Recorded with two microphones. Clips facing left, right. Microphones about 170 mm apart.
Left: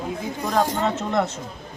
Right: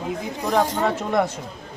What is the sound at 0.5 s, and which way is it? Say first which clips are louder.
Speech: right 1 dB; 10° right (ahead or behind).